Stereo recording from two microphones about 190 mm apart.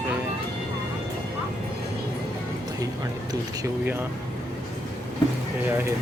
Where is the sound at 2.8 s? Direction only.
20° right (ahead or behind).